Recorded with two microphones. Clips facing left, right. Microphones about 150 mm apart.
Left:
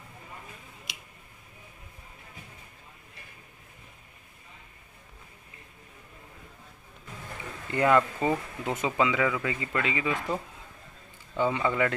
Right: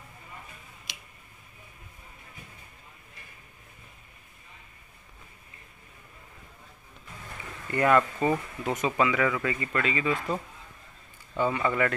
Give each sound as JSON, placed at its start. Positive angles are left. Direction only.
{"t": 7.7, "sound": "speech", "side_deg": 20}